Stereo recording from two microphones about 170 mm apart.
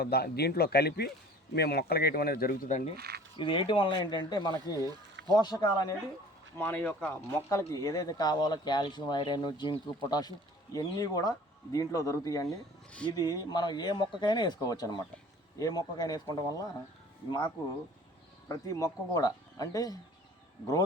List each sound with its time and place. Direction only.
0.0 s speech: 70° left (ahead or behind); by 2.9 s 45° left (ahead or behind)
3.0 s speech: 65° right (ahead or behind)
3.3 s speech: 30° left (ahead or behind)
6.6 s speech: 10° left (ahead or behind)
18.4 s speech: 20° left (ahead or behind)